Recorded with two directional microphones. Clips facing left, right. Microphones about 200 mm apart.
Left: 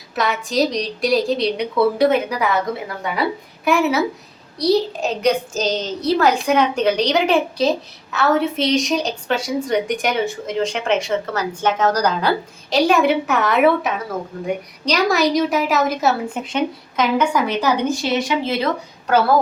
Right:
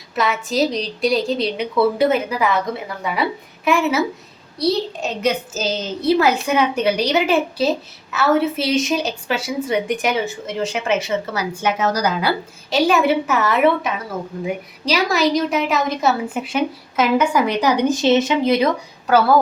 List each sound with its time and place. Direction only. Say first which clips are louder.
0.2 s a woman's voice: even; centre (ahead or behind)
3.6 s a woman's voice: even; centre (ahead or behind); by 18.7 s 15° right (ahead or behind)